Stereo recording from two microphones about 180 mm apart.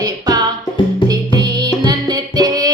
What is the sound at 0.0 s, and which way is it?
Music, 20° right (ahead or behind).